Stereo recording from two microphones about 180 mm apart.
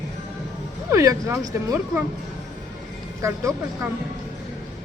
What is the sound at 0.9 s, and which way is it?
Speech, 15° right (ahead or behind).